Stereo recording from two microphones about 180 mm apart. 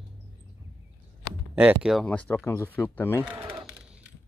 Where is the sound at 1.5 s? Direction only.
5° right (ahead or behind); by 3.2 s 10° left (ahead or behind).